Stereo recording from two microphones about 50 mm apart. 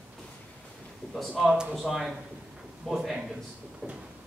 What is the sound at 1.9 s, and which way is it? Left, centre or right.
A man's voice, centre.